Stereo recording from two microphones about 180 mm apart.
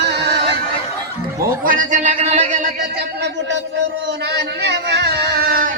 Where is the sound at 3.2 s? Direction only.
70° right (ahead or behind); by 5.7 s 55° right (ahead or behind).